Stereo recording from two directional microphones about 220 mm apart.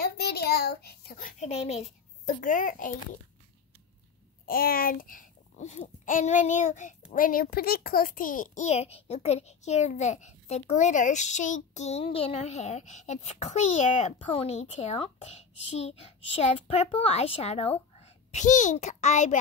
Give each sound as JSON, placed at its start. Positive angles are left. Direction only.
{"t": 0.0, "sound": "a sound", "side_deg": 45}
{"t": 1.4, "sound": "a child's voice", "side_deg": 30}
{"t": 4.5, "sound": "a child's voice", "side_deg": 40}